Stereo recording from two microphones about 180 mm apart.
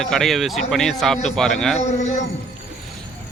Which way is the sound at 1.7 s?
40° left (ahead or behind).